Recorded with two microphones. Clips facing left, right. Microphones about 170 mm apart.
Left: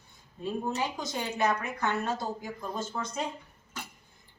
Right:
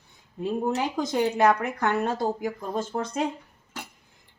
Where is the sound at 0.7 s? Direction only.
80° right; by 2.5 s 60° right (ahead or behind).